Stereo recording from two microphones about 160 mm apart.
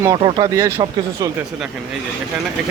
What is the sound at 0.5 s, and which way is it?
Speech, 20° right (ahead or behind).